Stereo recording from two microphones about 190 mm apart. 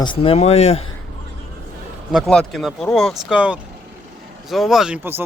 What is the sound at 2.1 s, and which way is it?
Speech, 5° left (ahead or behind).